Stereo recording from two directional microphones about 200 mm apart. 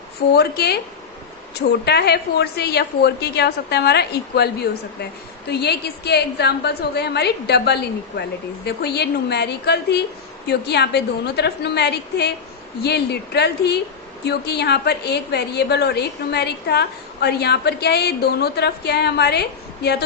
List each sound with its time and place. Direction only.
0.3 s a woman's voice: 55° left (ahead or behind)